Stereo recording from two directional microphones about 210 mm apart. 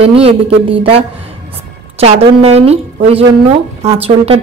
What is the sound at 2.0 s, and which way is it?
A woman's voice, 30° right (ahead or behind).